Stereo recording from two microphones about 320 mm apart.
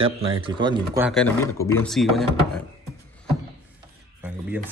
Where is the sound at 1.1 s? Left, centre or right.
Centre.